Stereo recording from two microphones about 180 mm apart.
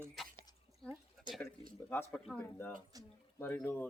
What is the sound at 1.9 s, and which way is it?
Speech, 10° left (ahead or behind).